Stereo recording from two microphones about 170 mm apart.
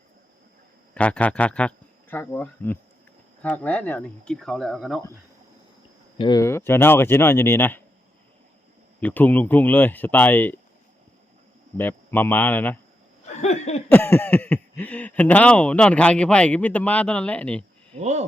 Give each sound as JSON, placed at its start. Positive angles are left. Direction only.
{"t": 0.9, "sound": "speech", "side_deg": 5}
{"t": 6.1, "sound": "speech", "side_deg": 25}
{"t": 9.0, "sound": "speech", "side_deg": 10}
{"t": 11.8, "sound": "speech", "side_deg": 10}
{"t": 13.2, "sound": "a sound", "side_deg": 40}
{"t": 13.9, "sound": "speech", "side_deg": 10}
{"t": 17.9, "sound": "speech", "side_deg": -40}